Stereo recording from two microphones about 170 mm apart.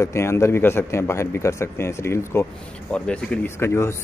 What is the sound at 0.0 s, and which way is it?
Speech, 15° left (ahead or behind).